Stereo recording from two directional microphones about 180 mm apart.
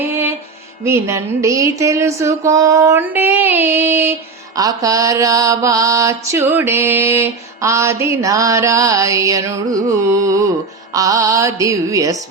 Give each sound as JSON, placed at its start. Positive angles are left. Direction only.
{"t": 0.0, "sound": "mantra", "side_deg": -10}
{"t": 0.9, "sound": "a sound", "side_deg": -15}
{"t": 10.9, "sound": "music", "side_deg": -20}